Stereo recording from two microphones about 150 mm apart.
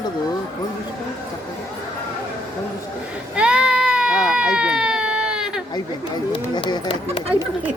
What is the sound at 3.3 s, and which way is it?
Baby cry, 5° right (ahead or behind).